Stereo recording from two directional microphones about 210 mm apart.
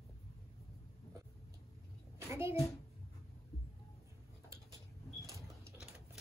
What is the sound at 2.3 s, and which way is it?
Speech, 10° right (ahead or behind).